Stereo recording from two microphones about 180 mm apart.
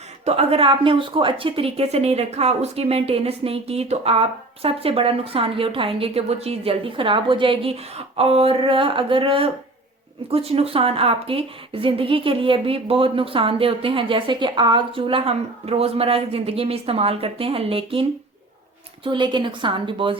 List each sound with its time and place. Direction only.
0.3 s a woman's voice: 35° right (ahead or behind)
19.0 s a woman's voice: 25° right (ahead or behind)